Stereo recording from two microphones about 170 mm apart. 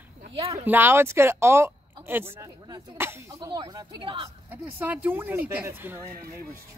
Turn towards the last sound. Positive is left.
turn(degrees=-10)  # may be behind; listen again after turning